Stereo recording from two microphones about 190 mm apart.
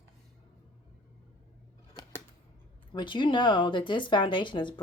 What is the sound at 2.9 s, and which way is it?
Speech, 25° left (ahead or behind).